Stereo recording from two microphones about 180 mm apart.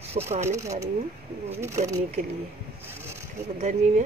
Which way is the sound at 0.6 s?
15° right (ahead or behind).